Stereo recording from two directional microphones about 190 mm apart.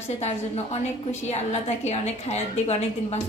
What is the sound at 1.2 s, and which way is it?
A woman's voice, 35° left (ahead or behind).